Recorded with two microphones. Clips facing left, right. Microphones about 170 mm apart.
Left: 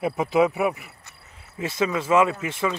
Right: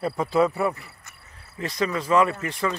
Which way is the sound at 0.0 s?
20° left (ahead or behind).